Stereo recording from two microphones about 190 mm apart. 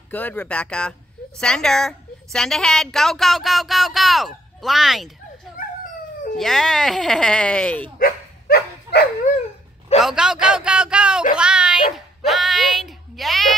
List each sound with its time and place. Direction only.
0.1 s a woman's voice: 10° left (ahead or behind)
6.3 s a woman's voice: centre (ahead or behind)
8.0 s dog: 55° left (ahead or behind)
10.0 s a sound: 5° right (ahead or behind)
12.2 s music: centre (ahead or behind)